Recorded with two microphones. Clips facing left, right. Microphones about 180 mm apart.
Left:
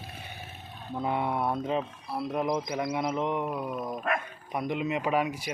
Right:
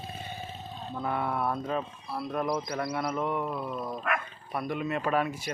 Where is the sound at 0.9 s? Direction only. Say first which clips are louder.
Left 2 dB; 20° left (ahead or behind).